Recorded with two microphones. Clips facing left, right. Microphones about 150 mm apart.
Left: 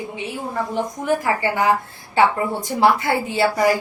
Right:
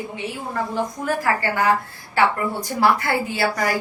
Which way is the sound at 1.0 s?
20° left (ahead or behind).